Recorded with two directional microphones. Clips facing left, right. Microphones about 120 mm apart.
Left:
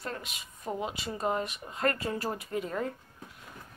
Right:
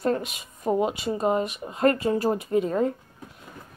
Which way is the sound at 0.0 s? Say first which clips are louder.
Right 13 dB; 45° right (ahead or behind).